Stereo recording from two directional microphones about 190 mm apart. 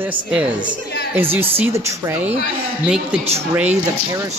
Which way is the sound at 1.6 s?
15° right (ahead or behind).